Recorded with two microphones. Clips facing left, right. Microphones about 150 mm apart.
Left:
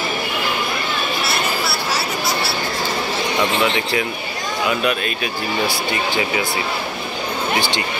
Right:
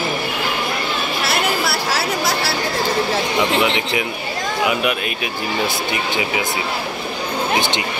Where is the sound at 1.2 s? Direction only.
90° right.